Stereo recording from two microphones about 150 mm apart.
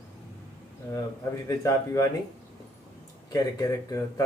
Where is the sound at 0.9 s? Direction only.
20° left (ahead or behind).